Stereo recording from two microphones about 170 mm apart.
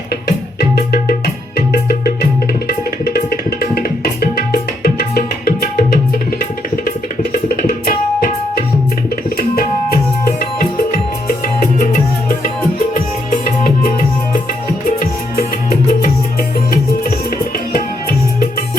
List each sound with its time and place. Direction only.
0.3 s music: 65° left (ahead or behind)
1.5 s tabla: 65° left (ahead or behind)
7.4 s tabla: 60° left (ahead or behind)
14.8 s music: 60° left (ahead or behind)